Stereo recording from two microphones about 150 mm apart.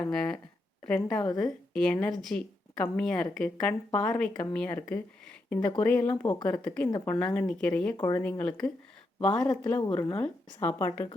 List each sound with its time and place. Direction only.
0.0 s a woman's voice: 5° left (ahead or behind)
9.8 s speech: 30° left (ahead or behind)
10.2 s speech: 10° left (ahead or behind)